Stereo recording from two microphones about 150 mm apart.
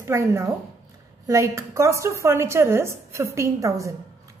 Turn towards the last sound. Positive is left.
turn(degrees=-20)  # may be behind; listen again after turning